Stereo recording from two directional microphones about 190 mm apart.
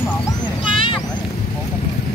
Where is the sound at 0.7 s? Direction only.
25° left (ahead or behind).